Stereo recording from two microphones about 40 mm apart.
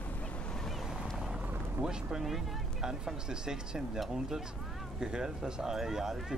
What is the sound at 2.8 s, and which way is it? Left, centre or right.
Speech, centre.